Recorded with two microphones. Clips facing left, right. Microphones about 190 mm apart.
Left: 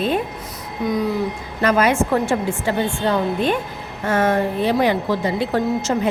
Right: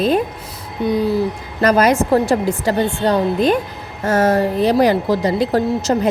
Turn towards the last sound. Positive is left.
turn(degrees=-35)  # may be behind; listen again after turning